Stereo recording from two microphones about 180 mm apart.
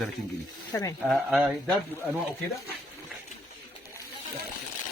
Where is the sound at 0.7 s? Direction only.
20° left (ahead or behind).